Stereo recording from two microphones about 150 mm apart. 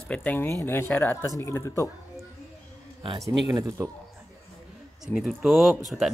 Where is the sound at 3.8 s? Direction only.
20° right (ahead or behind).